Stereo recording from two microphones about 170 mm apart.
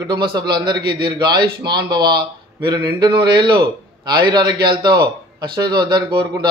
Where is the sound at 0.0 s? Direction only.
25° right (ahead or behind).